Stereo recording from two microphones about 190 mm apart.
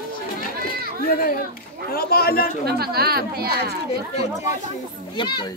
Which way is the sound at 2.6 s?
55° right (ahead or behind).